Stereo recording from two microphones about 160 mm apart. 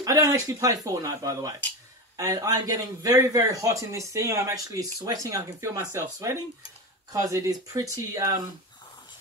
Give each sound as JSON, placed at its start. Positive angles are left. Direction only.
{"t": 0.0, "sound": "a man's voice", "side_deg": -20}